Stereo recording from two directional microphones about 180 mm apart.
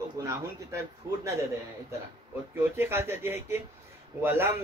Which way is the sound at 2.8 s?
15° right (ahead or behind).